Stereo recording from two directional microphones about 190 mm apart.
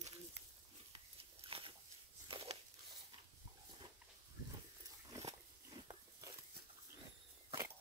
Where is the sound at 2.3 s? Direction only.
30° right (ahead or behind).